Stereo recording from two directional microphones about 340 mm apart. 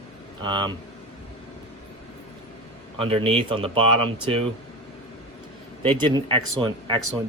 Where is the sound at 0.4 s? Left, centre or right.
Centre.